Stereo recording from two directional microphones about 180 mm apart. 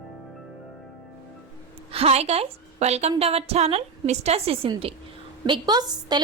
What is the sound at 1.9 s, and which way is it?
A woman's voice, 35° right (ahead or behind).